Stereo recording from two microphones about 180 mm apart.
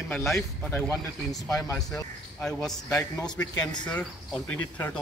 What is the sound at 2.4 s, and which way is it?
Speech, centre (ahead or behind).